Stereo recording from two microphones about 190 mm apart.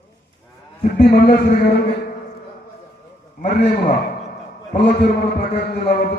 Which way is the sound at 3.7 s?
55° left (ahead or behind).